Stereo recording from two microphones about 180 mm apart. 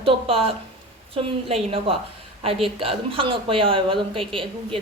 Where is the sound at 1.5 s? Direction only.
30° right (ahead or behind).